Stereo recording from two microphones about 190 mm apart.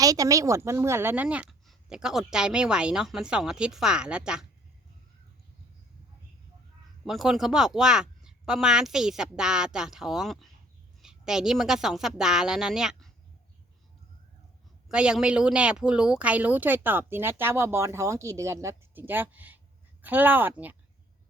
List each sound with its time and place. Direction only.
0.0 s a woman's voice: 20° right (ahead or behind)
7.0 s a woman's voice: centre (ahead or behind)
14.8 s speech: 5° right (ahead or behind)